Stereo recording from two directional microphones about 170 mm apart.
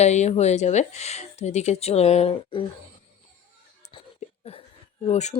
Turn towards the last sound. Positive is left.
turn(degrees=40)  # may be behind; listen again after turning